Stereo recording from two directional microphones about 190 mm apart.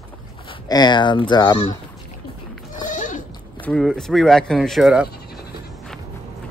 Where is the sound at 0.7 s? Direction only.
20° left (ahead or behind).